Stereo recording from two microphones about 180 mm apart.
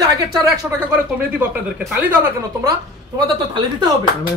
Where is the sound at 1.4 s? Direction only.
10° right (ahead or behind).